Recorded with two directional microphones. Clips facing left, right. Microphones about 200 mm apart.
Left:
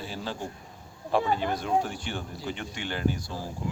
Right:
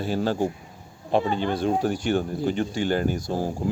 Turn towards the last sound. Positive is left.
turn(degrees=-50)  # may be behind; listen again after turning